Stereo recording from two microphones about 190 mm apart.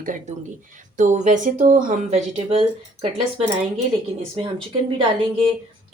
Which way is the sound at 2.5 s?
30° right (ahead or behind).